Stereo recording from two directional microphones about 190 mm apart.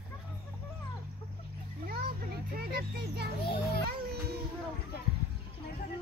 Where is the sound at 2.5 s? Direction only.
55° right (ahead or behind).